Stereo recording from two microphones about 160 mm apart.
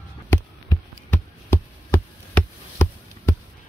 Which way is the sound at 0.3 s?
15° left (ahead or behind).